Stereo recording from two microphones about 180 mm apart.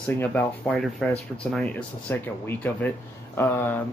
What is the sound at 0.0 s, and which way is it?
Speech, 10° left (ahead or behind).